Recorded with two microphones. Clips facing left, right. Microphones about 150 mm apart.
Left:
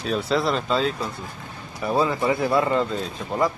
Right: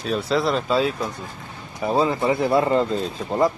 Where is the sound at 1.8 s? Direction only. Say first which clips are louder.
Right 2 dB; 25° right (ahead or behind).